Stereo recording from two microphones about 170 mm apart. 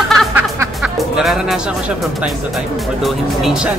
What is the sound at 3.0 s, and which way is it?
Speech, centre (ahead or behind).